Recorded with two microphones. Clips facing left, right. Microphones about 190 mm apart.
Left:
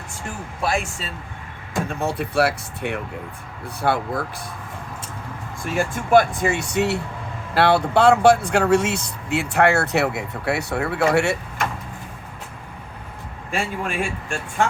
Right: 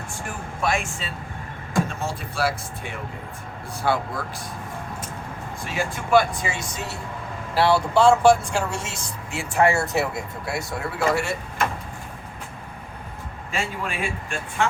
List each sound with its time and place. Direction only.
0.6 s speech: 35° left (ahead or behind)
2.0 s speech: 60° left (ahead or behind)
5.6 s speech: 50° left (ahead or behind); by 7.0 s 70° left (ahead or behind)
7.5 s speech: 60° left (ahead or behind)
13.5 s speech: 50° left (ahead or behind)